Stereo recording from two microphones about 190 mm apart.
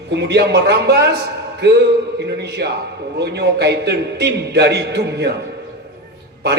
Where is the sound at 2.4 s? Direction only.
60° right (ahead or behind).